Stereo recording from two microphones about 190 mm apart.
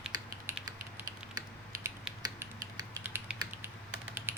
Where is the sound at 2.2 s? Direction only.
20° right (ahead or behind).